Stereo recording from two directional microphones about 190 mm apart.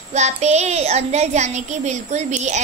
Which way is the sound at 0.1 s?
35° right (ahead or behind).